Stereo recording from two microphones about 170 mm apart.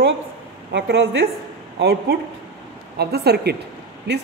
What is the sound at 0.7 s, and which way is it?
Speech, 85° right.